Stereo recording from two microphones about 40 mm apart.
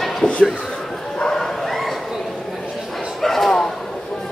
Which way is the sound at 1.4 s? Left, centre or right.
Centre.